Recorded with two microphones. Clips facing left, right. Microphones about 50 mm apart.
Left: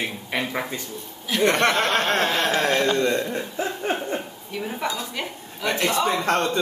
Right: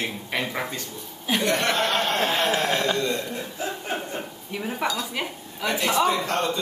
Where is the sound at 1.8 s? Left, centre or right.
Left.